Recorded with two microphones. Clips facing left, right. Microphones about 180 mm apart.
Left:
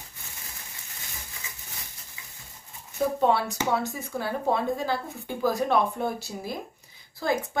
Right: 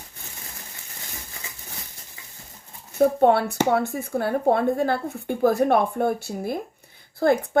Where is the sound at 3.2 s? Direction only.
60° right (ahead or behind).